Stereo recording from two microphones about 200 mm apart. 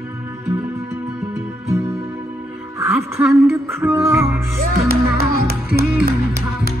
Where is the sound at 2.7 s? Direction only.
15° right (ahead or behind).